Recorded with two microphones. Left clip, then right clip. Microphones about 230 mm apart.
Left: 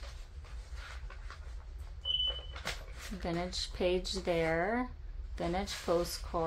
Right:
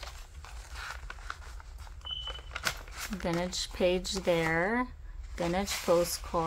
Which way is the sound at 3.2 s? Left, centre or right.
Centre.